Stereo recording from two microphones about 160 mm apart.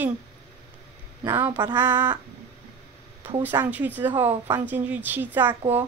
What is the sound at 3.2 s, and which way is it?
A woman's voice, 10° right (ahead or behind).